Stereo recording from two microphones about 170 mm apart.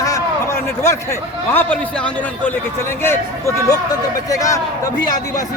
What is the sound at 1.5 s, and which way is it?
A man's voice, 5° left (ahead or behind).